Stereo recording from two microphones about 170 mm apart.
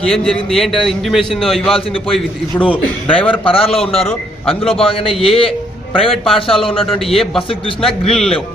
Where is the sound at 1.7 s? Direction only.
30° left (ahead or behind).